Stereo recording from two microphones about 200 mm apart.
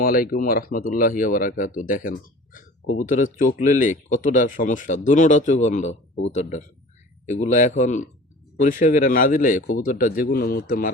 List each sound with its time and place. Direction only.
0.0 s speech: 45° left (ahead or behind)